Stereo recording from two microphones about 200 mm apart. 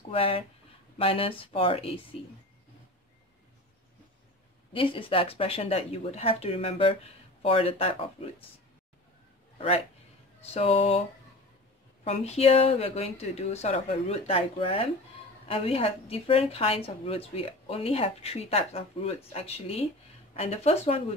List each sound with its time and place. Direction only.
0.1 s a woman's voice: 25° left (ahead or behind)
4.7 s a woman's voice: 25° left (ahead or behind)
10.5 s speech: 30° left (ahead or behind)
12.0 s a woman's voice: 30° left (ahead or behind)